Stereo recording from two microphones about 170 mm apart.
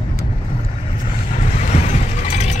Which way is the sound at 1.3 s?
40° left (ahead or behind).